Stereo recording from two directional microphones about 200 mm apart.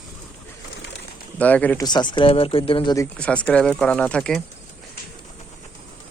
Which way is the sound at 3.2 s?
5° left (ahead or behind).